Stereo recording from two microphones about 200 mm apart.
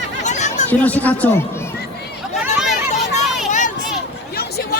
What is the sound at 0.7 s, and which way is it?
Speech, 10° left (ahead or behind).